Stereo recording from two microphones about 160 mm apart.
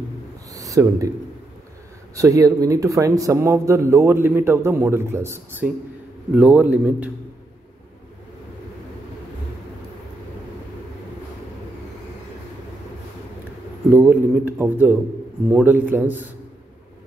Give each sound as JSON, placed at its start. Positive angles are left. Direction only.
{"t": 0.6, "sound": "speech", "side_deg": -20}
{"t": 2.1, "sound": "a man's voice", "side_deg": -20}
{"t": 13.8, "sound": "a man's voice", "side_deg": -10}